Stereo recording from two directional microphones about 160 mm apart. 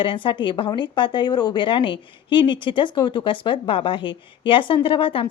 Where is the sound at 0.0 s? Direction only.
30° left (ahead or behind).